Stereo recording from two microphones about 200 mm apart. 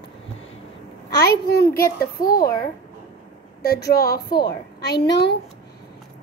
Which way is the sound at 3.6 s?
50° left (ahead or behind).